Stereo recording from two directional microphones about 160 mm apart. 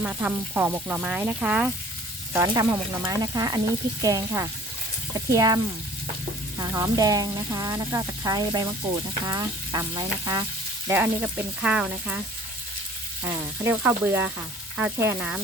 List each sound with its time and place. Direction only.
0.0 s speech: 10° right (ahead or behind)
2.3 s speech: 20° right (ahead or behind)
6.6 s speech: 25° right (ahead or behind)
10.8 s speech: 10° right (ahead or behind)
13.7 s speech: 15° right (ahead or behind)